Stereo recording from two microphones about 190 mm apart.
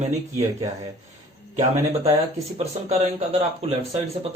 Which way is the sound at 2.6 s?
35° right (ahead or behind).